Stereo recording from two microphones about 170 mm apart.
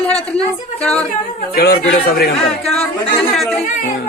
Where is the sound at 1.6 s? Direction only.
65° left (ahead or behind).